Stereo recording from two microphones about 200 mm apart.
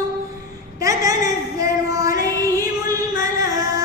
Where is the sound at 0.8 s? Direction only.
15° right (ahead or behind).